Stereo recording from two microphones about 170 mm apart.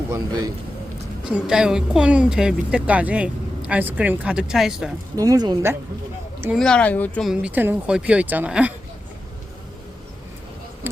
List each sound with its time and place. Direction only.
0.1 s speech: 20° right (ahead or behind)
1.2 s a woman's voice: 5° right (ahead or behind)
5.1 s speech: 20° right (ahead or behind)
6.6 s a woman's voice: 5° left (ahead or behind)